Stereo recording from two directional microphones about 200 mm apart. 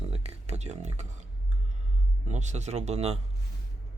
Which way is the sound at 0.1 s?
35° right (ahead or behind).